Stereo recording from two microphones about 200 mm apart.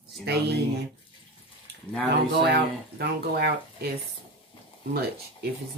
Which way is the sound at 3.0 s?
50° right (ahead or behind).